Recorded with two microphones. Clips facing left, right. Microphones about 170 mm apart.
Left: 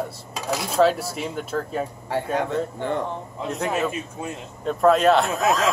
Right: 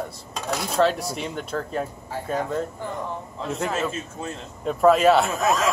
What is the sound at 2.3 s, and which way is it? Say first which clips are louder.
Speech: right 1 dB; 70° left (ahead or behind).